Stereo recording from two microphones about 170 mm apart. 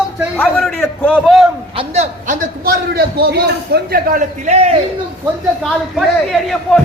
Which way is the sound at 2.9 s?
65° right (ahead or behind).